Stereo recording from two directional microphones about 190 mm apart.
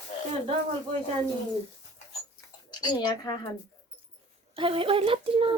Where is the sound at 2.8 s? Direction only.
20° left (ahead or behind).